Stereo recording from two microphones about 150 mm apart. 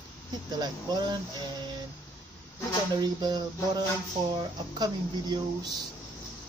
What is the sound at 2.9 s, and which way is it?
Speech, 25° right (ahead or behind).